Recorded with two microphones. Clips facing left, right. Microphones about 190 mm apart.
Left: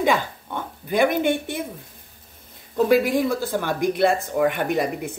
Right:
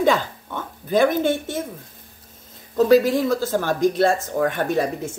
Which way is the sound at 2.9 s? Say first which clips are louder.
Right 3 dB; 15° left (ahead or behind).